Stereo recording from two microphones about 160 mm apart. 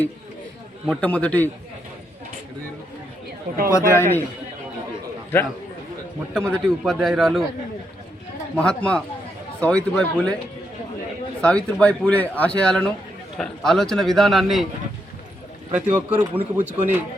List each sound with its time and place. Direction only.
1.0 s speech: 10° left (ahead or behind)
3.7 s speech: 20° left (ahead or behind)
5.3 s a man's voice: 15° left (ahead or behind)
8.5 s speech: 5° left (ahead or behind)
11.3 s a man's voice: 5° left (ahead or behind)
15.7 s a man's voice: 10° right (ahead or behind)